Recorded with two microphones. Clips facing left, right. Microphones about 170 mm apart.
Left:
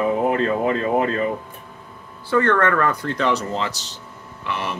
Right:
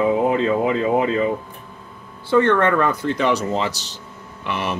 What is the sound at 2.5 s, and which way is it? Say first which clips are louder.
Speech: right 1 dB; 20° right (ahead or behind).